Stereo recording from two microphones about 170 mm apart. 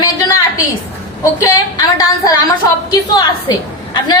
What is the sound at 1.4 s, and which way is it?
A woman's voice, 20° left (ahead or behind).